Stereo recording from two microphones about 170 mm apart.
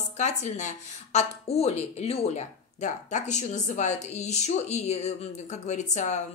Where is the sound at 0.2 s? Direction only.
45° left (ahead or behind).